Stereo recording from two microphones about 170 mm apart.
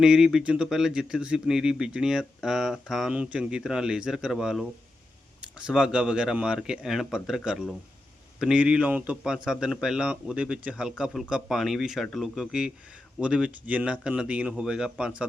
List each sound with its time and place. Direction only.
0.0 s a man's voice: 5° right (ahead or behind)